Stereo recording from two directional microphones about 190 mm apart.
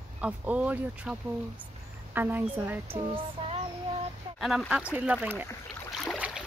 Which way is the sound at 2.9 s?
30° right (ahead or behind).